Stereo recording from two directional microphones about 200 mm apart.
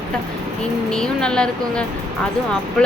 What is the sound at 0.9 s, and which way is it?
Speech, 5° left (ahead or behind).